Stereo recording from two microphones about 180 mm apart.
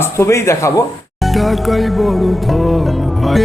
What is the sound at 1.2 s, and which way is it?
Music, centre (ahead or behind).